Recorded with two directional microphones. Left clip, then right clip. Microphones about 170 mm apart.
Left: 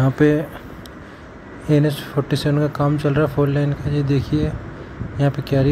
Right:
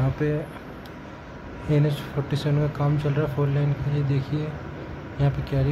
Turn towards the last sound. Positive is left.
turn(degrees=30)  # may be behind; listen again after turning